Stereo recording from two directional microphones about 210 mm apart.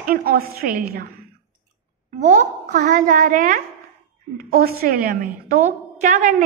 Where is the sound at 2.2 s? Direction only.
35° right (ahead or behind).